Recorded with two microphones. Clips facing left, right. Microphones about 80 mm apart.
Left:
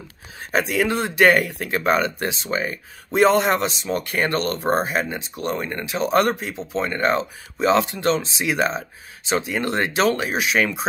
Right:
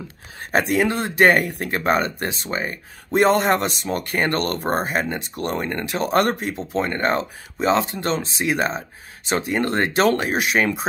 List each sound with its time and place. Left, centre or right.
0.5 s speech: right
7.6 s speech: right